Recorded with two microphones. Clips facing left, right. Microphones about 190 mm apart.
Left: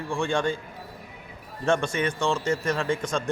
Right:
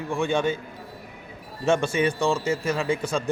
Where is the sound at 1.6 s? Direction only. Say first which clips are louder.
Right 3 dB; 5° right (ahead or behind).